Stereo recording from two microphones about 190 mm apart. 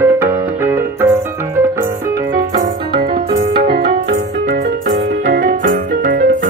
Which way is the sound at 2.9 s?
50° right (ahead or behind).